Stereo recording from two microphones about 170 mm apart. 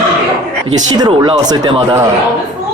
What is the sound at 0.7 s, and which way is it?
Speech, 25° right (ahead or behind).